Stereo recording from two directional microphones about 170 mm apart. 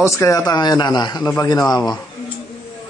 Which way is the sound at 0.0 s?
15° left (ahead or behind).